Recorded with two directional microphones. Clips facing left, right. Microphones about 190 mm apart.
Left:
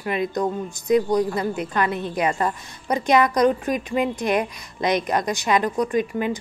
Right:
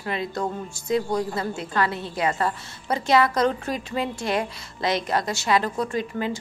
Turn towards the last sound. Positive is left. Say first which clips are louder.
# left 4 dB
turn(degrees=15)  # may be behind; listen again after turning